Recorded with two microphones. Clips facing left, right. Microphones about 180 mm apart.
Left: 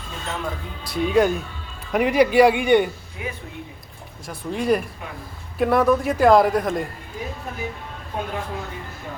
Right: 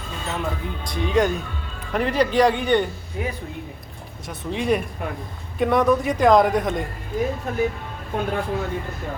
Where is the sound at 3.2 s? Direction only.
40° right (ahead or behind).